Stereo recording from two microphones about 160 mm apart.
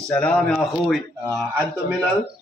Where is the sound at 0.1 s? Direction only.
5° left (ahead or behind).